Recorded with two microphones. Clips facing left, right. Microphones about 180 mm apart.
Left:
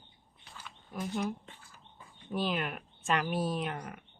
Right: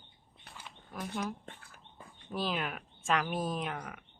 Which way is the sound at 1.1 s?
60° right (ahead or behind).